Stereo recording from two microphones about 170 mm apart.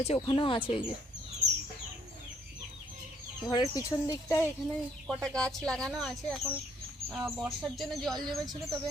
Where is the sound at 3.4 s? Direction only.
20° left (ahead or behind).